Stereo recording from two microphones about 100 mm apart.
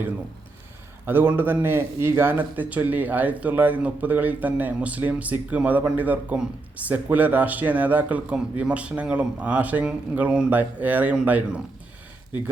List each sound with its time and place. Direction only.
1.0 s speech: 20° right (ahead or behind)